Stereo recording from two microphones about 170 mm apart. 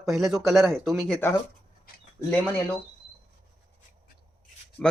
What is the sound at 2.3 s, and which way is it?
Speech, 10° left (ahead or behind).